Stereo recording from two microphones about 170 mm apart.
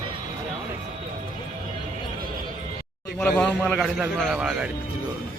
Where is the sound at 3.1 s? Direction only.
5° left (ahead or behind).